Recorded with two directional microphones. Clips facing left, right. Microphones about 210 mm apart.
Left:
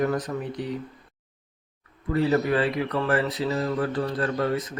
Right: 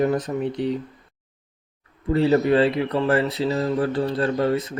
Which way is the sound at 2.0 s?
30° right (ahead or behind).